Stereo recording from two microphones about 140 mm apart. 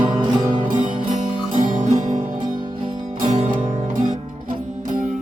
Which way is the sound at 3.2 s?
60° right (ahead or behind).